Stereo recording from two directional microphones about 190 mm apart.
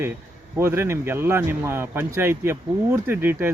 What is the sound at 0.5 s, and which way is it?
A man's voice, 15° right (ahead or behind).